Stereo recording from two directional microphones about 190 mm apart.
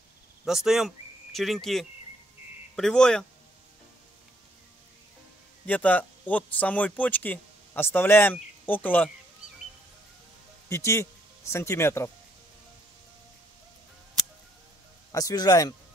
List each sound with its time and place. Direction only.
0.5 s speech: centre (ahead or behind)
5.7 s speech: 10° left (ahead or behind)
10.7 s speech: 15° left (ahead or behind)
15.1 s a man's voice: 20° left (ahead or behind)